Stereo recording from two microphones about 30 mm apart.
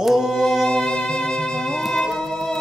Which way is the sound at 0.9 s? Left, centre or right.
Left.